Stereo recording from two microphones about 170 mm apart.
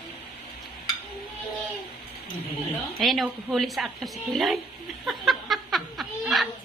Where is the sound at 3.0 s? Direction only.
Centre (ahead or behind).